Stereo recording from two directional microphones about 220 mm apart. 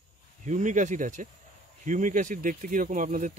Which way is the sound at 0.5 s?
35° right (ahead or behind).